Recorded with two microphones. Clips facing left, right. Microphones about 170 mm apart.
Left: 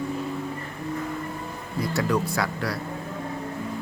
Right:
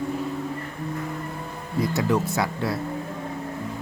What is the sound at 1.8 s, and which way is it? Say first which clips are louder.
Speech: right 2 dB; 20° right (ahead or behind).